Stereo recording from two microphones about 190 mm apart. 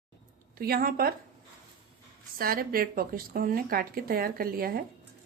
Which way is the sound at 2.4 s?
50° right (ahead or behind).